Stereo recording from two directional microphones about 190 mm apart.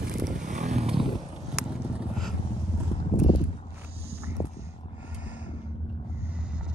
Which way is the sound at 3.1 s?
35° left (ahead or behind).